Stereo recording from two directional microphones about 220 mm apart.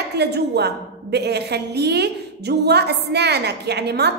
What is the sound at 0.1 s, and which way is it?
A woman's voice, 50° right (ahead or behind).